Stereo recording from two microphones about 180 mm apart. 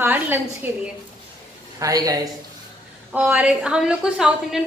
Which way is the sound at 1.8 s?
20° right (ahead or behind).